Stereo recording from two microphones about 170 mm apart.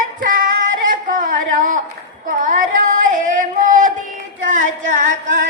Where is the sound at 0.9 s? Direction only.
50° right (ahead or behind).